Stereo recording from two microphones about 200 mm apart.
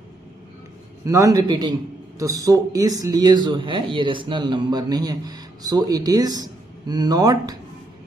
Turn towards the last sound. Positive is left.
turn(degrees=-20)  # may be behind; listen again after turning